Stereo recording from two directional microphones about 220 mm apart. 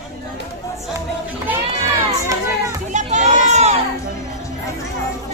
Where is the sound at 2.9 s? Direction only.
35° right (ahead or behind).